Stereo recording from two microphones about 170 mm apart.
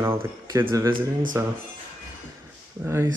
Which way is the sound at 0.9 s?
55° right (ahead or behind).